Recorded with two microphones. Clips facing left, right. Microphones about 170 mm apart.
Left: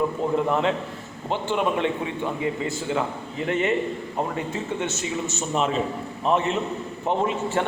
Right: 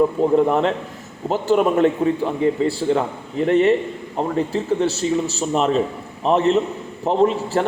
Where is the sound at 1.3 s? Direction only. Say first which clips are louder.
Right 7 dB; 40° right (ahead or behind).